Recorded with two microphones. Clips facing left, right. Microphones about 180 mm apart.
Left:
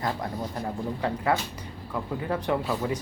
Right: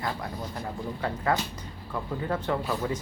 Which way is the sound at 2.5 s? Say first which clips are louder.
Left 3 dB; 20° left (ahead or behind).